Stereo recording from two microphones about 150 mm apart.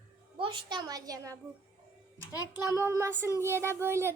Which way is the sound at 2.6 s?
20° right (ahead or behind).